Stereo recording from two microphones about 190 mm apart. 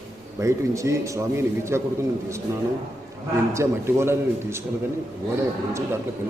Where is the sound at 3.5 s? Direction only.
15° right (ahead or behind).